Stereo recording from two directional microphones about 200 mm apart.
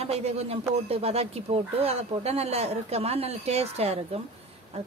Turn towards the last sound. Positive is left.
turn(degrees=-30)  # may be behind; listen again after turning